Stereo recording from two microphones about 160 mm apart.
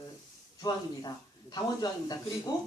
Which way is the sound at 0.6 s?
25° left (ahead or behind).